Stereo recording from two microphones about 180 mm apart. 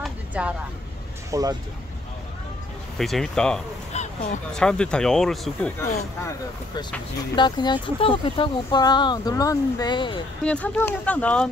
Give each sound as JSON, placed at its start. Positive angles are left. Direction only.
{"t": 0.0, "sound": "vehicle", "side_deg": -5}
{"t": 1.3, "sound": "speech", "side_deg": -20}
{"t": 3.0, "sound": "speech", "side_deg": 0}
{"t": 3.9, "sound": "a sound", "side_deg": 40}
{"t": 4.5, "sound": "speech", "side_deg": 5}
{"t": 7.3, "sound": "speech", "side_deg": 25}
{"t": 10.4, "sound": "speech", "side_deg": 5}